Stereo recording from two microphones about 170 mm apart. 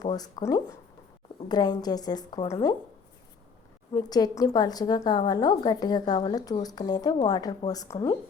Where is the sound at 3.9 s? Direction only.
25° left (ahead or behind).